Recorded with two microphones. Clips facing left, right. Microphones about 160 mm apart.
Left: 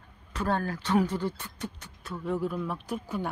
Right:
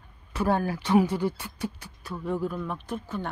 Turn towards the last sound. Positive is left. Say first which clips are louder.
# even
turn(degrees=10)  # may be behind; listen again after turning